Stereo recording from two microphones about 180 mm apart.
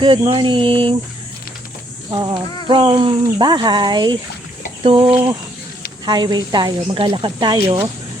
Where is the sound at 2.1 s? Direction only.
25° right (ahead or behind).